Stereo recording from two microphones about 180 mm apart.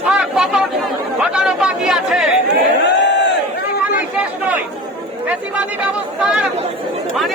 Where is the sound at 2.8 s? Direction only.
75° left (ahead or behind).